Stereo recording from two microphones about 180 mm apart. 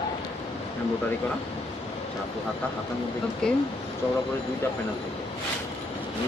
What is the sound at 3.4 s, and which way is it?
Speech, 5° left (ahead or behind).